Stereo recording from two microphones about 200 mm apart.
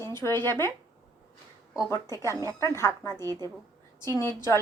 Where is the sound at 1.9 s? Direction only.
15° left (ahead or behind).